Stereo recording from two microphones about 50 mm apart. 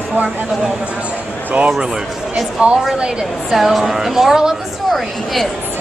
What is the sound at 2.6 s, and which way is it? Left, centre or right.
Speech, right.